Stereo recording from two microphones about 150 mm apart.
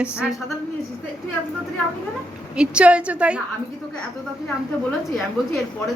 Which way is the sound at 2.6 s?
10° right (ahead or behind).